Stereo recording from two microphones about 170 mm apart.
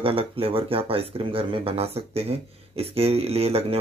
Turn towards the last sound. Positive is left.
turn(degrees=-35)  # may be behind; listen again after turning